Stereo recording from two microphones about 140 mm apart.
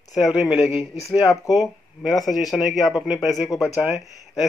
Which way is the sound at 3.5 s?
25° left (ahead or behind).